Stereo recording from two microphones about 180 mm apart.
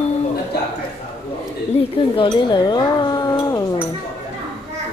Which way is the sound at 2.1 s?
25° left (ahead or behind).